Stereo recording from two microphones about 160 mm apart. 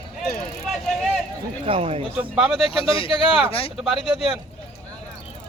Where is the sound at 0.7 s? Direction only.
Centre (ahead or behind).